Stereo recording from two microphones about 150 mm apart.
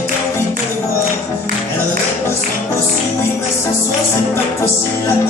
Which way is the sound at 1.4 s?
65° right (ahead or behind).